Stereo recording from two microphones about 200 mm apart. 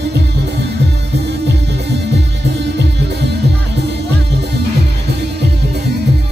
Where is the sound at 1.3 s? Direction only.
60° right (ahead or behind).